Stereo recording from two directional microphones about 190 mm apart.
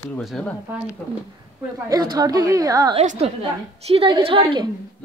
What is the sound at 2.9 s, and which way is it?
A woman's voice, 35° right (ahead or behind).